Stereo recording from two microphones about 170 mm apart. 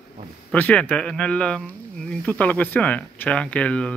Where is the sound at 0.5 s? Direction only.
10° left (ahead or behind).